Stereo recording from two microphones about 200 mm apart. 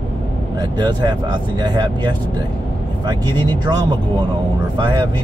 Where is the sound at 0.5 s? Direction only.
20° right (ahead or behind).